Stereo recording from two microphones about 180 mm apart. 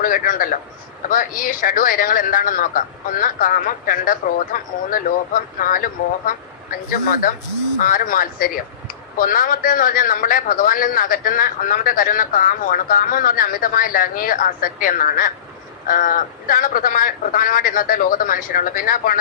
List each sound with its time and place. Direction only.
0.0 s a man's voice: 50° left (ahead or behind)
7.8 s a man's voice: 50° left (ahead or behind)